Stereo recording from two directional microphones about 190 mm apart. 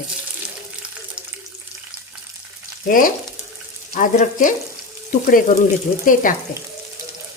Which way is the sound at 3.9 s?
40° left (ahead or behind).